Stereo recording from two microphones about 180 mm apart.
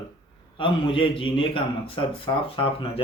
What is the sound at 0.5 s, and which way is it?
A man's voice, 30° left (ahead or behind).